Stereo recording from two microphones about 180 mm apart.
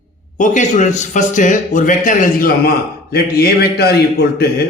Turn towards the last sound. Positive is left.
turn(degrees=60)  # may be behind; listen again after turning